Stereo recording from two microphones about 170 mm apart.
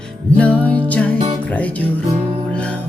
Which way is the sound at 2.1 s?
40° right (ahead or behind).